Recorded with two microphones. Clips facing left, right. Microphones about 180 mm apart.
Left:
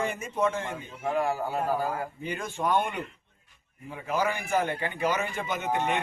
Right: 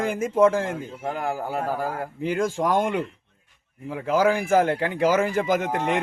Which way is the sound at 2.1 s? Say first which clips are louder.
Right 9 dB; 90° right.